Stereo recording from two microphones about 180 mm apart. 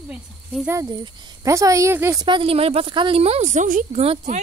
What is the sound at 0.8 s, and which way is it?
Speech, 25° right (ahead or behind).